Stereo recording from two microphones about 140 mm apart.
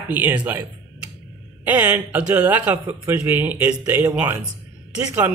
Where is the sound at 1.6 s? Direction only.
15° right (ahead or behind).